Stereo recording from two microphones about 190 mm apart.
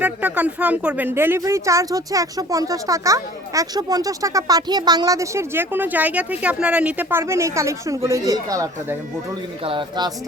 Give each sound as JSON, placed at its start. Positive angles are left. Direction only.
{"t": 0.0, "sound": "speech", "side_deg": -10}